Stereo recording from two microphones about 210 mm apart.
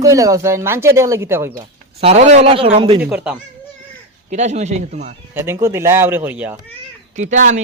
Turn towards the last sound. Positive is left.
turn(degrees=-35)  # may be behind; listen again after turning